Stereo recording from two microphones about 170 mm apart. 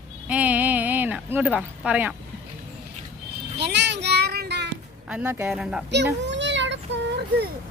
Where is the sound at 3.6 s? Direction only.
85° right.